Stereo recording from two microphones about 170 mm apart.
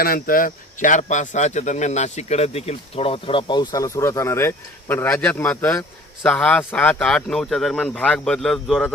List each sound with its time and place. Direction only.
0.0 s speech: 60° left (ahead or behind); by 8.9 s 5° left (ahead or behind)